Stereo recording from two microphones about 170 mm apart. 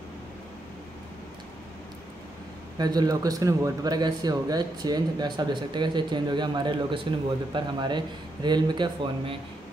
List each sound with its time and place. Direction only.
2.8 s a man's voice: 25° right (ahead or behind)